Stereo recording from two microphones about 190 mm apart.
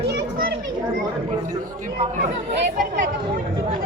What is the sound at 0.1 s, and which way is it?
Children playing, 50° right (ahead or behind).